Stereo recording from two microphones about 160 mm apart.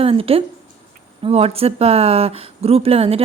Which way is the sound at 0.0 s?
35° right (ahead or behind).